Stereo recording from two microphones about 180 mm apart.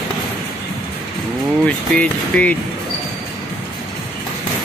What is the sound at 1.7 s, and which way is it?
Speech, 5° left (ahead or behind).